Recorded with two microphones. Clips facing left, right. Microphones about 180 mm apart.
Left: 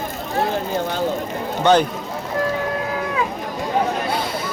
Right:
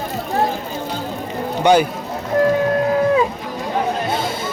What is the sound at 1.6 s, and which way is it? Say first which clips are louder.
Speech: right 2 dB; 10° right (ahead or behind).